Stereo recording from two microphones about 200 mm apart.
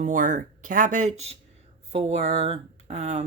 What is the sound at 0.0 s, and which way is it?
Speech, 40° right (ahead or behind).